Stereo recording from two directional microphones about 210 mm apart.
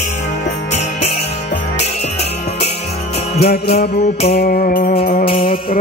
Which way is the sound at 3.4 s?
50° left (ahead or behind).